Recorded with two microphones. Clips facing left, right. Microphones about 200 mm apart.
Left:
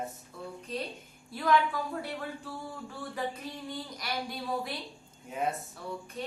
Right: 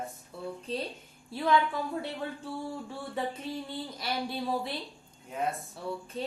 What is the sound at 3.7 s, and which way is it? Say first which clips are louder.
Speech: right 2 dB; 30° right (ahead or behind).